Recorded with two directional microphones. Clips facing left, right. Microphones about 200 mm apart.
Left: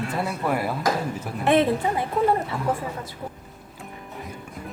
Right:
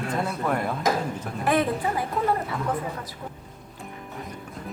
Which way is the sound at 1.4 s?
25° left (ahead or behind).